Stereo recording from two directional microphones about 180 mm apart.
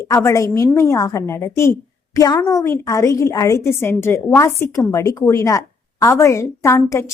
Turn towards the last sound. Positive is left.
turn(degrees=15)  # may be behind; listen again after turning